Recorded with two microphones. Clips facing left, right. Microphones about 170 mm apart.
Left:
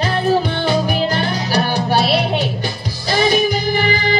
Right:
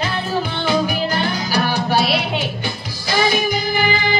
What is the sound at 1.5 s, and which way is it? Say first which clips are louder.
Music: left 2 dB; 35° left (ahead or behind).